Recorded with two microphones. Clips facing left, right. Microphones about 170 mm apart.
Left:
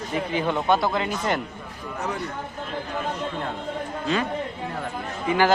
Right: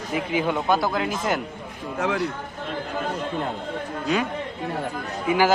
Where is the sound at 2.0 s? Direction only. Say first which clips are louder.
Right 5 dB; 90° right.